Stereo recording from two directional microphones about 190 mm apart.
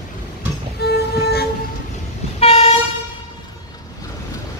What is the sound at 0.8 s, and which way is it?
Music, 60° left (ahead or behind).